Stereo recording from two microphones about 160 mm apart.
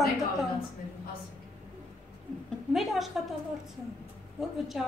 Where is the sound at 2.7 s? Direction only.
Centre (ahead or behind).